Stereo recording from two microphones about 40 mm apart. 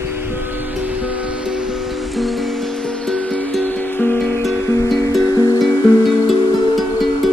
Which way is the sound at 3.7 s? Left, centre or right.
Left.